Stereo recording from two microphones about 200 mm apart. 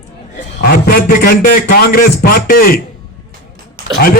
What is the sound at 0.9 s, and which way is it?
Speech, 50° left (ahead or behind).